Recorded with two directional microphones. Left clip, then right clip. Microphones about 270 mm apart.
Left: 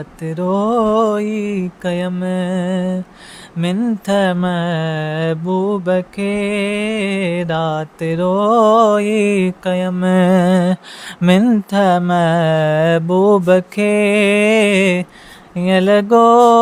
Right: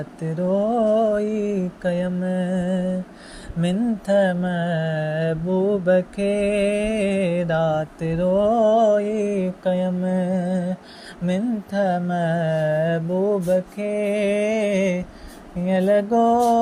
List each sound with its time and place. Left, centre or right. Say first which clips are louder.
0.2 s mantra: left 4 dB; centre